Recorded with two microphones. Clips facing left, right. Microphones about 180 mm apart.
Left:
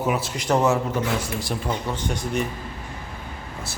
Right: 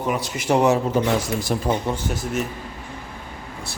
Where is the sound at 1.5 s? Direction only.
45° right (ahead or behind).